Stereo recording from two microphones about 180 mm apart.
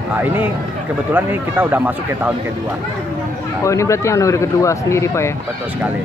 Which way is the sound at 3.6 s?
15° left (ahead or behind).